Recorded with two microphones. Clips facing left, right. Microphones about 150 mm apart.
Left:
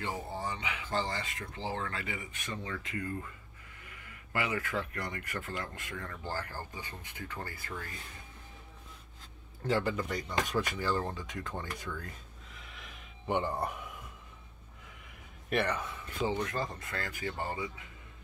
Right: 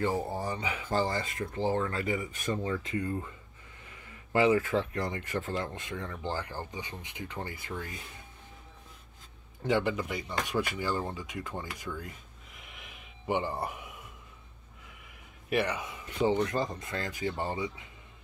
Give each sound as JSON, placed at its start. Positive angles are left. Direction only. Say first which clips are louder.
{"t": 0.0, "sound": "speech", "louder": "right 6 dB", "side_deg": -45}
{"t": 9.6, "sound": "speech", "louder": "right 3 dB", "side_deg": -10}
{"t": 12.5, "sound": "a sound", "louder": "even", "side_deg": -10}
{"t": 15.5, "sound": "speech", "louder": "right 2 dB", "side_deg": -10}
{"t": 16.2, "sound": "speech", "louder": "right 5 dB", "side_deg": -30}